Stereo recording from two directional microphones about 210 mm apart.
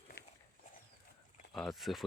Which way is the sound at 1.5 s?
Centre (ahead or behind).